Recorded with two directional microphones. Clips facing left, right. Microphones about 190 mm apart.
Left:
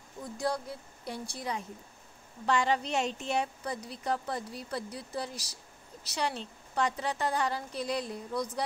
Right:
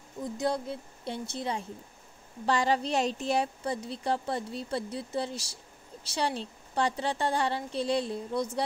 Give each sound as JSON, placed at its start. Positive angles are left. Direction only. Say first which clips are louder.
{"t": 0.2, "sound": "a woman's voice", "louder": "right 3 dB", "side_deg": -20}
{"t": 2.4, "sound": "a woman's voice", "louder": "right 2 dB", "side_deg": -35}